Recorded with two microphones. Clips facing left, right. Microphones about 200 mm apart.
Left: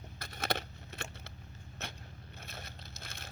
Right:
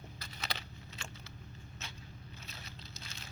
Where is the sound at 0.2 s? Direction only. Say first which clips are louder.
Left 9 dB; 55° left (ahead or behind).